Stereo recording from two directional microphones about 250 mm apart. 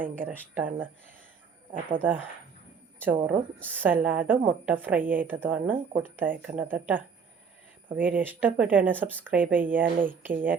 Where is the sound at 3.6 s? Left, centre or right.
Centre.